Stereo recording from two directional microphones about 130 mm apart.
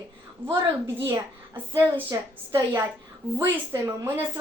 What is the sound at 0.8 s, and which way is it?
A woman's voice, 20° right (ahead or behind).